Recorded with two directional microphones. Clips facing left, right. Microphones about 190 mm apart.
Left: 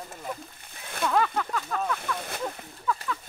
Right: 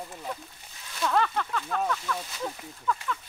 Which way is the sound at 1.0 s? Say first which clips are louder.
Left 1 dB; centre (ahead or behind).